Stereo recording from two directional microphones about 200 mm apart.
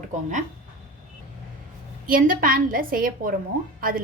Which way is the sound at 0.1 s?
40° right (ahead or behind).